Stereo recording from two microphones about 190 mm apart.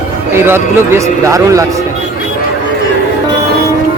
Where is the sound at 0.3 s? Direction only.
10° right (ahead or behind).